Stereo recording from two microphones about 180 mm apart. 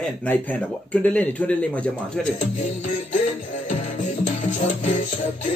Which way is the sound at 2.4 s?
45° left (ahead or behind).